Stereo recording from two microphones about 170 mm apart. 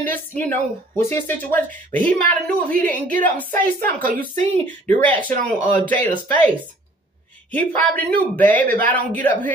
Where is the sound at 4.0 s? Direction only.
55° right (ahead or behind).